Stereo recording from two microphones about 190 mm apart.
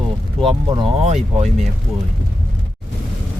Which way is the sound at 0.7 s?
30° right (ahead or behind).